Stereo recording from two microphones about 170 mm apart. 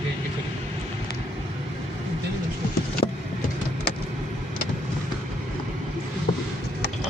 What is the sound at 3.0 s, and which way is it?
Vehicle, 35° left (ahead or behind).